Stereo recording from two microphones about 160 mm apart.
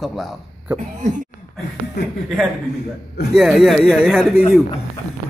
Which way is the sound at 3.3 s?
Centre (ahead or behind).